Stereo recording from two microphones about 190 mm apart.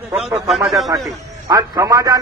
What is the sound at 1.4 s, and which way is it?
Speech, 20° right (ahead or behind).